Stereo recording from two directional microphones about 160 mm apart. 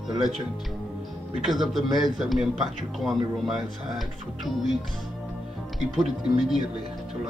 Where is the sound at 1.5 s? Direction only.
Centre (ahead or behind).